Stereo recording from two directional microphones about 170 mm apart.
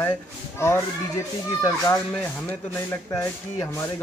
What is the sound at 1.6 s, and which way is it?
Speech, 15° left (ahead or behind).